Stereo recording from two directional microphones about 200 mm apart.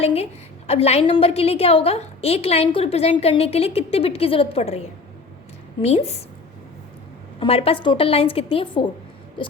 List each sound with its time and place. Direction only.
0.0 s a woman's voice: 30° left (ahead or behind)
5.8 s a woman's voice: 35° left (ahead or behind)
7.3 s a woman's voice: 30° left (ahead or behind)